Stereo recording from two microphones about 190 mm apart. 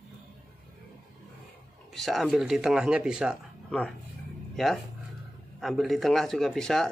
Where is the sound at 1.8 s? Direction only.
Centre (ahead or behind).